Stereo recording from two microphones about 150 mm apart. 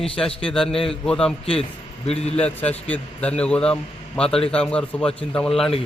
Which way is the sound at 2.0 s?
45° left (ahead or behind).